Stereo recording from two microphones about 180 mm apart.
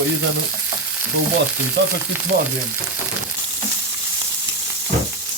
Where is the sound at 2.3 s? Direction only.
65° right (ahead or behind).